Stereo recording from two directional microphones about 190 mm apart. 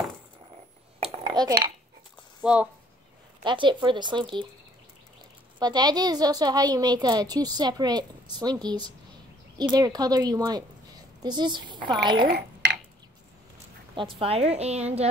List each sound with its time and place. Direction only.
1.2 s speech: 20° right (ahead or behind)
2.4 s speech: 5° right (ahead or behind)
3.4 s a woman's voice: 25° right (ahead or behind)
5.6 s a woman's voice: 20° right (ahead or behind)
12.2 s speech: 55° right (ahead or behind)
14.2 s a woman's voice: 30° right (ahead or behind)